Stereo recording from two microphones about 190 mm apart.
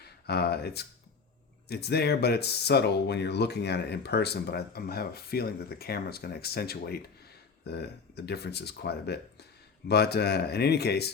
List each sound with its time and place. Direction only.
0.0 s speech: 60° left (ahead or behind)